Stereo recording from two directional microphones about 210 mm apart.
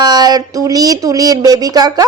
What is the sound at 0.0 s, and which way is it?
Speech, 20° right (ahead or behind).